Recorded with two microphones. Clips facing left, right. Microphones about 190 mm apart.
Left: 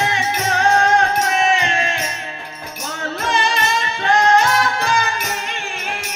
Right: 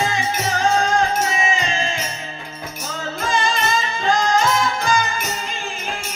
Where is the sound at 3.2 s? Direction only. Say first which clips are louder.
Left 1 dB; 65° left (ahead or behind).